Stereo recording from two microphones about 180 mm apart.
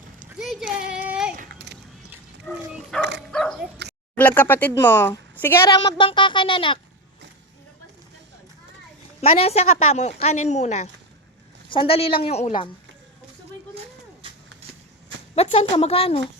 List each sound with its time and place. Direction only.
0.3 s a sound: 5° right (ahead or behind)
2.5 s speech: 10° left (ahead or behind)
3.2 s dog: 5° left (ahead or behind)
4.1 s speech: 10° left (ahead or behind); by 6.7 s 25° left (ahead or behind)
9.2 s speech: 30° left (ahead or behind)
15.4 s speech: 35° left (ahead or behind)